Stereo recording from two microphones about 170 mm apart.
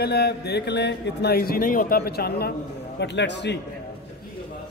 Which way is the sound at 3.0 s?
90° left.